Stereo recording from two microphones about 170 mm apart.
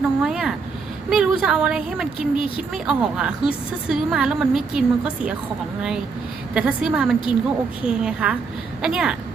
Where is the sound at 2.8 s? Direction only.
5° right (ahead or behind).